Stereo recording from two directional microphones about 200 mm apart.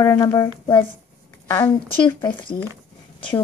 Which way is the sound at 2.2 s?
20° left (ahead or behind).